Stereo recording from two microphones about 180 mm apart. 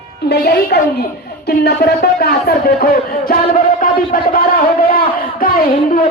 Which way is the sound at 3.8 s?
55° left (ahead or behind).